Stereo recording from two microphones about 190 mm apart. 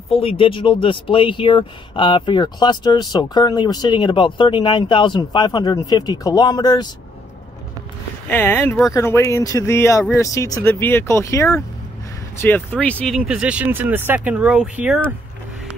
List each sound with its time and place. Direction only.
0.1 s speech: 30° left (ahead or behind)
8.3 s speech: 10° left (ahead or behind); by 15.0 s 5° right (ahead or behind)